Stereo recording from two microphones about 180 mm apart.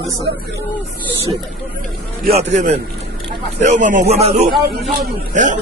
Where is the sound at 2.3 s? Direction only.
35° right (ahead or behind).